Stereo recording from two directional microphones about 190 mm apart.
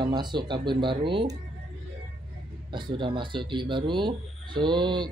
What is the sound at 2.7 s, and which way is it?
Speech, 25° right (ahead or behind).